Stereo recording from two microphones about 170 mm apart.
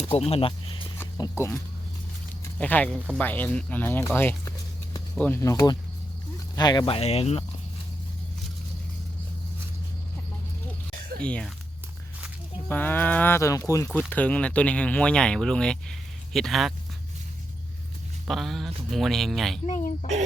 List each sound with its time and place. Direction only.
0.1 s speech: 35° left (ahead or behind)
1.2 s speech: 15° left (ahead or behind); by 7.4 s 35° left (ahead or behind)
11.2 s speech: 5° left (ahead or behind)
12.6 s speech: 10° left (ahead or behind)
18.3 s speech: centre (ahead or behind)
19.6 s speech: 45° left (ahead or behind)